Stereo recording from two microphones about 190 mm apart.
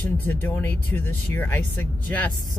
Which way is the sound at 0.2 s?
10° left (ahead or behind).